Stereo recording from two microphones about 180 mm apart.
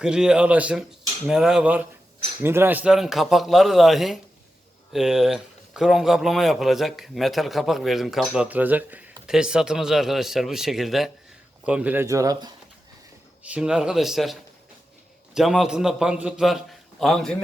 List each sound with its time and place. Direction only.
0.0 s a man's voice: 5° right (ahead or behind); by 12.5 s 20° right (ahead or behind)
13.4 s a man's voice: 5° right (ahead or behind)
15.4 s a man's voice: 5° right (ahead or behind)